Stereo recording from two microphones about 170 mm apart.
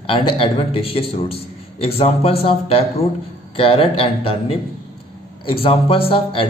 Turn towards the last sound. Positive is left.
turn(degrees=35)  # may be behind; listen again after turning